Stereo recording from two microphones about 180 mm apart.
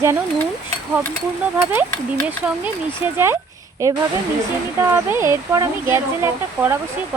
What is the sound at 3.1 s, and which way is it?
Speech, 15° right (ahead or behind).